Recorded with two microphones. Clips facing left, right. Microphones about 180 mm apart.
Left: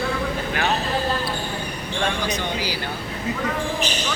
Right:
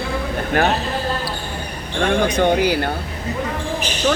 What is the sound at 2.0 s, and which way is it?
Speech, 55° right (ahead or behind).